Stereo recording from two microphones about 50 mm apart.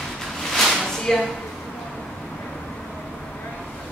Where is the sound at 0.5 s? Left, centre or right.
Centre.